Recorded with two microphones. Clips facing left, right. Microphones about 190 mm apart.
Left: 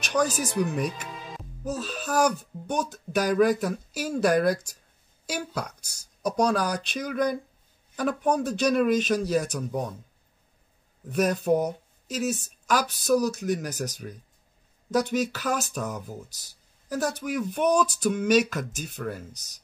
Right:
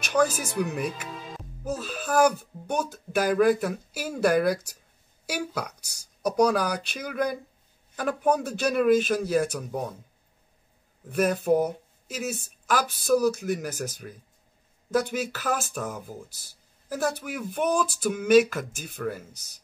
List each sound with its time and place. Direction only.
0.0 s speech: 5° right (ahead or behind)
11.1 s speech: 5° right (ahead or behind)
12.3 s a woman's voice: 55° right (ahead or behind)
12.6 s speech: 5° right (ahead or behind)